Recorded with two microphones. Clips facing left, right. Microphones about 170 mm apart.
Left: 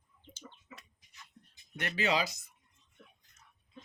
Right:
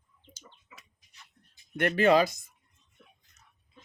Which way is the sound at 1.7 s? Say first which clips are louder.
Right 10 dB; 55° right (ahead or behind).